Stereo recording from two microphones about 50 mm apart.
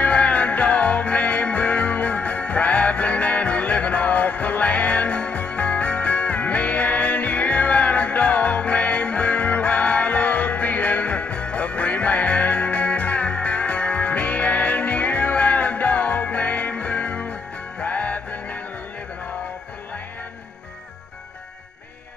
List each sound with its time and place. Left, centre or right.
0.0 s music: left